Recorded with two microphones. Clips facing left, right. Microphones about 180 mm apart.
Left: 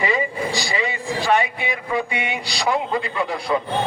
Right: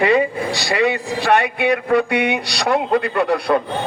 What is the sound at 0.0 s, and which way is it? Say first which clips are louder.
A man's voice: right 6 dB; 65° right (ahead or behind).